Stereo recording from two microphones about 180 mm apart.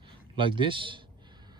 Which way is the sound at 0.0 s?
25° right (ahead or behind).